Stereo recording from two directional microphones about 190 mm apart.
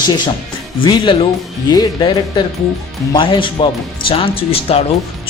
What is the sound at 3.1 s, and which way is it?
A man's voice, 25° left (ahead or behind).